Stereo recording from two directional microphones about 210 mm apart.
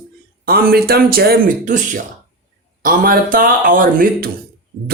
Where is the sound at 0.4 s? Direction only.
45° right (ahead or behind).